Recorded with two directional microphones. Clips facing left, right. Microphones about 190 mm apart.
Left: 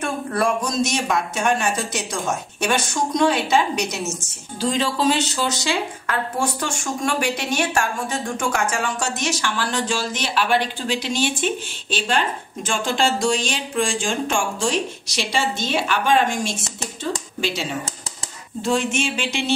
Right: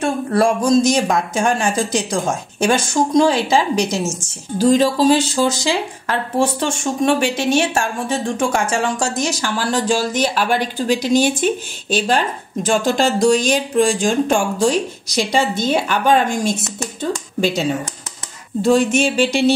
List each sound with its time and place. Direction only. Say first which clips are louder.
0.0 s speech: right 6 dB; 30° right (ahead or behind)
4.6 s speech: right 8 dB; 40° right (ahead or behind)
18.6 s speech: right 7 dB; 35° right (ahead or behind)